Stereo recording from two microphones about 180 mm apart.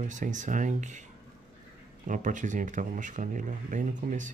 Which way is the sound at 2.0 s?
45° right (ahead or behind).